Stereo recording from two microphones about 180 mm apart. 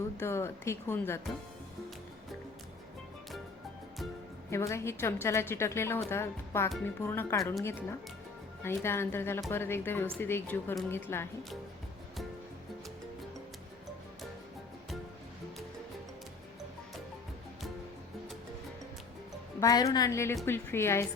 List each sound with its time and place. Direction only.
0.2 s a woman's voice: 15° left (ahead or behind)
4.5 s a woman's voice: 15° left (ahead or behind)
19.5 s a woman's voice: 20° left (ahead or behind)